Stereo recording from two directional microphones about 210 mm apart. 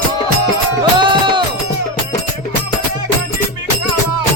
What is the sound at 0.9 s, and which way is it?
Music, 20° right (ahead or behind).